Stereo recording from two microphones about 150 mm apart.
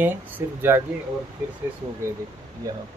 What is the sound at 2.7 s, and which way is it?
Speech, 25° right (ahead or behind).